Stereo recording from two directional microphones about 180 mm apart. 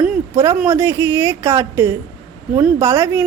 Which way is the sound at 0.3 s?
15° right (ahead or behind).